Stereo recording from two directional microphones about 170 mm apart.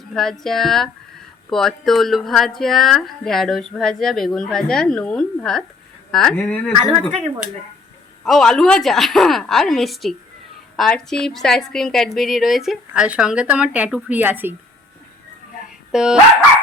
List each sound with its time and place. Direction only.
0.1 s a woman's voice: centre (ahead or behind)
8.2 s a woman's voice: 5° left (ahead or behind)
15.9 s speech: 5° right (ahead or behind)